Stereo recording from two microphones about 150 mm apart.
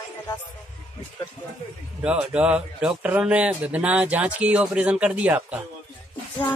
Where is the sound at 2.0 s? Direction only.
10° right (ahead or behind).